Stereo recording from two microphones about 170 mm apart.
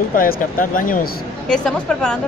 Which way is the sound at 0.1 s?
55° left (ahead or behind).